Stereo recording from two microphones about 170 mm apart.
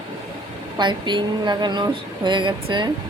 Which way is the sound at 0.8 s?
25° right (ahead or behind).